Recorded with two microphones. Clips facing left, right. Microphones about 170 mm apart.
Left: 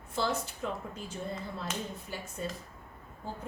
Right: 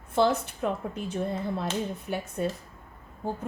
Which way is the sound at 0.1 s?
65° right (ahead or behind).